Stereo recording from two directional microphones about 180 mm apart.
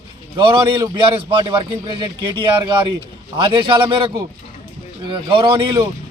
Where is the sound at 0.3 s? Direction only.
25° right (ahead or behind).